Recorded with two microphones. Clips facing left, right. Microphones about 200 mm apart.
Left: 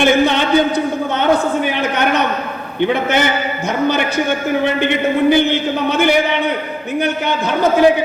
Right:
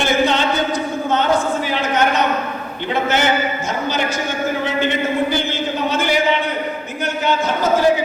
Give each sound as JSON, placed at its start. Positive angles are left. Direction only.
{"t": 0.0, "sound": "a sound", "side_deg": 60}
{"t": 2.8, "sound": "a man's voice", "side_deg": 60}
{"t": 5.3, "sound": "a man's voice", "side_deg": 60}